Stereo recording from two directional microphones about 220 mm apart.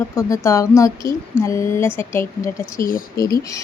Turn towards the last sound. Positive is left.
turn(degrees=15)  # may be behind; listen again after turning